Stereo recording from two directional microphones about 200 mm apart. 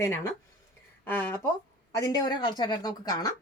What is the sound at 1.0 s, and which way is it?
Speech, 10° left (ahead or behind).